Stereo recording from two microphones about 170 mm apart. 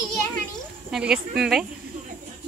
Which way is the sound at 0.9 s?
5° right (ahead or behind).